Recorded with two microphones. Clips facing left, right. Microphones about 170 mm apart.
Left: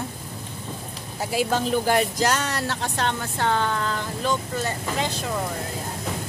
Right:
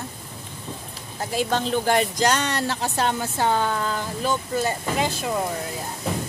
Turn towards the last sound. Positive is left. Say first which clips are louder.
# right 3 dB
turn(degrees=-10)  # may be behind; listen again after turning